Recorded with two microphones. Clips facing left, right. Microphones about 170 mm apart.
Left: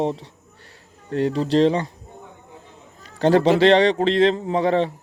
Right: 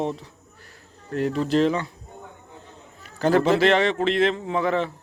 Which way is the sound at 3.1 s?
30° left (ahead or behind).